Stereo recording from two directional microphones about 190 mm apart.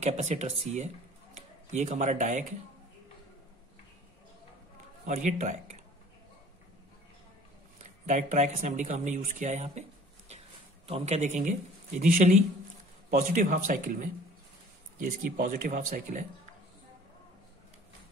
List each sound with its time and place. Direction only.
0.0 s speech: 35° right (ahead or behind)
5.0 s speech: 40° right (ahead or behind)
7.8 s speech: 40° right (ahead or behind)